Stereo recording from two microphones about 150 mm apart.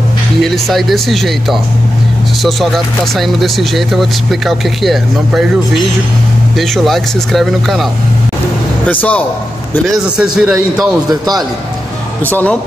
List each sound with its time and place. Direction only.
0.4 s speech: centre (ahead or behind)
6.6 s speech: centre (ahead or behind)
8.8 s a man's voice: 10° left (ahead or behind)
9.8 s speech: 5° right (ahead or behind)
11.1 s a man's voice: 25° right (ahead or behind)
12.3 s a man's voice: 10° left (ahead or behind)